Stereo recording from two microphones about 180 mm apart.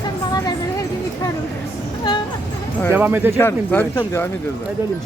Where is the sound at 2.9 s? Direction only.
10° right (ahead or behind).